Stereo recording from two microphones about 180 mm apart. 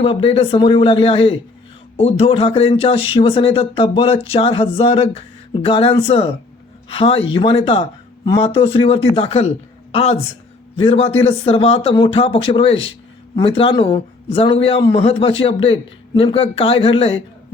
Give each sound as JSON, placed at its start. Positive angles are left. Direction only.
{"t": 0.0, "sound": "speech", "side_deg": 30}